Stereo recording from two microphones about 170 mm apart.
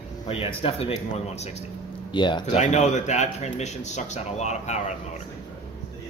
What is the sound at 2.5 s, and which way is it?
A man's voice, 40° left (ahead or behind).